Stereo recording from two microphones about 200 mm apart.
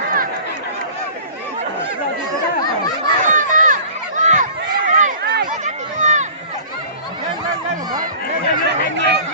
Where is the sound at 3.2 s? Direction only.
40° right (ahead or behind).